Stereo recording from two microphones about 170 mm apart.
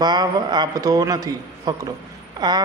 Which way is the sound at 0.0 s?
25° right (ahead or behind).